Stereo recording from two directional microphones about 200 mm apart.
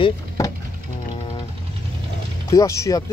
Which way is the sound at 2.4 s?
15° left (ahead or behind).